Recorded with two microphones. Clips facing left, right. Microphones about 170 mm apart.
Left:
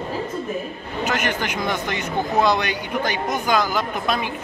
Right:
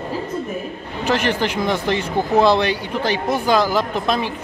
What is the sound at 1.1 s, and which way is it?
Speech, 30° right (ahead or behind).